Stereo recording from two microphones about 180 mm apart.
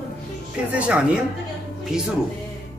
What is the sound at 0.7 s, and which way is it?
Speech, 5° right (ahead or behind).